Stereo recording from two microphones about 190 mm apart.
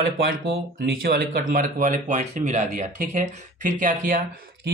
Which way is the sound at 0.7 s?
50° right (ahead or behind).